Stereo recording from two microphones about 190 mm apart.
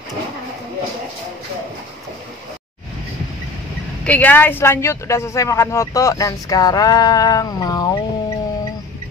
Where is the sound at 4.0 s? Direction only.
10° left (ahead or behind).